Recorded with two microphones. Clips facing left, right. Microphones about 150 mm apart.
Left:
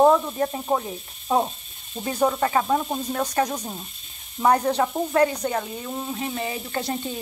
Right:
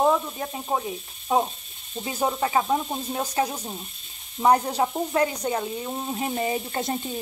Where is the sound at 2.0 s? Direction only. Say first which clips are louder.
Left 3 dB; 15° right (ahead or behind).